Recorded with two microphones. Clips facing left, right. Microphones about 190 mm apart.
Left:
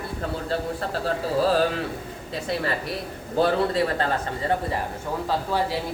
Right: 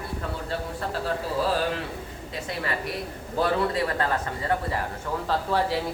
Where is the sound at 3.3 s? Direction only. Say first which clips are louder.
Left 3 dB; 30° left (ahead or behind).